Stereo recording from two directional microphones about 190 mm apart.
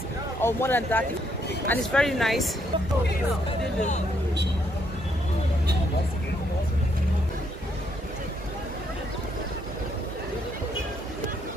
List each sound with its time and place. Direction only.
0.4 s speech: 10° left (ahead or behind)
3.4 s speech: 40° left (ahead or behind)